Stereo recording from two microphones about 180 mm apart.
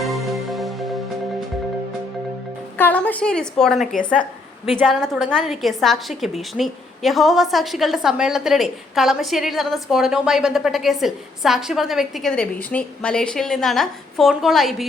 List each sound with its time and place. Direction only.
0.0 s music: centre (ahead or behind)
2.7 s a woman's voice: 10° left (ahead or behind)